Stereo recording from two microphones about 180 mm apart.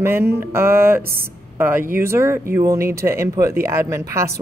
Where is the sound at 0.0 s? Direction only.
10° right (ahead or behind).